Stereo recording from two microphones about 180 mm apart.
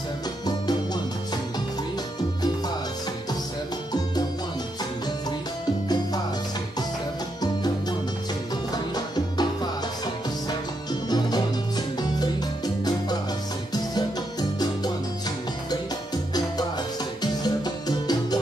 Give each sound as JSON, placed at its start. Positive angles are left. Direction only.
{"t": 8.7, "sound": "music", "side_deg": 20}
{"t": 10.9, "sound": "music", "side_deg": 20}
{"t": 17.2, "sound": "music", "side_deg": 20}